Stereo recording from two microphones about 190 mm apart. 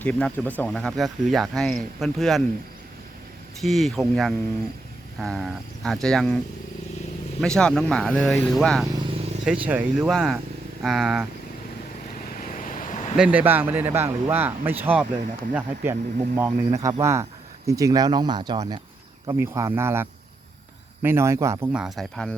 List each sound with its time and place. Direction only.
0.0 s speech: 5° left (ahead or behind)
3.6 s speech: centre (ahead or behind)
7.4 s speech: 5° left (ahead or behind)
12.4 s vehicle: 45° left (ahead or behind)
13.1 s speech: 5° right (ahead or behind)